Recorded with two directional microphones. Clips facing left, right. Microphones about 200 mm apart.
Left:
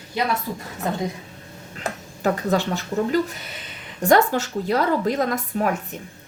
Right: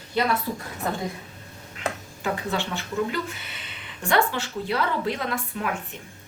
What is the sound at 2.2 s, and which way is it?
A woman's voice, 40° left (ahead or behind).